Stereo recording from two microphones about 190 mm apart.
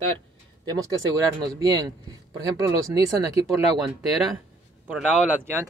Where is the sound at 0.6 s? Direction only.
20° right (ahead or behind).